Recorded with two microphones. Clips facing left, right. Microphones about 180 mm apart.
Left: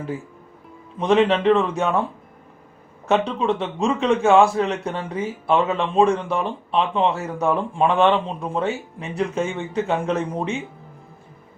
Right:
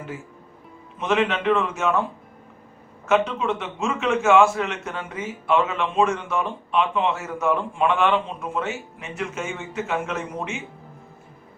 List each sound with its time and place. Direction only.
0.9 s a man's voice: 35° left (ahead or behind)
3.1 s a man's voice: 35° left (ahead or behind)